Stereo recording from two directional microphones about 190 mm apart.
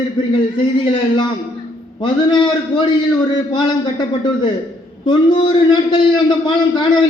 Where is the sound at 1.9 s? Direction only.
25° left (ahead or behind).